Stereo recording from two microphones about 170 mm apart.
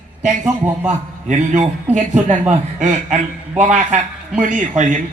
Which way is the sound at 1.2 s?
45° right (ahead or behind).